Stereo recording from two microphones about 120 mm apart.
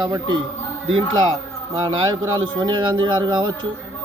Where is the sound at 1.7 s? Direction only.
35° right (ahead or behind).